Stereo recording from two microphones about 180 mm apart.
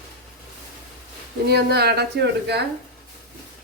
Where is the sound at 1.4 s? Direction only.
60° right (ahead or behind).